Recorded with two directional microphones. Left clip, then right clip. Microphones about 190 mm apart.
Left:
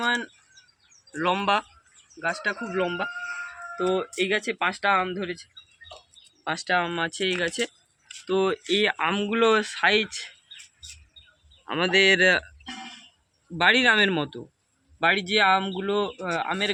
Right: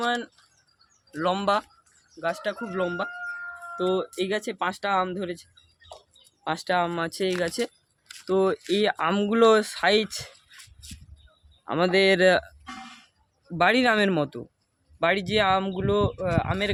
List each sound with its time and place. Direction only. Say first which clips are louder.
0.0 s bird: left 1 dB; 55° right (ahead or behind)
1.1 s speech: left 1 dB; 60° right (ahead or behind)
2.2 s speech: left 1 dB; 50° right (ahead or behind); by 10.2 s 65° right (ahead or behind)
11.6 s speech: left 1 dB; 60° right (ahead or behind)
13.6 s speech: left 2 dB; 65° right (ahead or behind)
15.0 s speech: left 2 dB; 50° right (ahead or behind)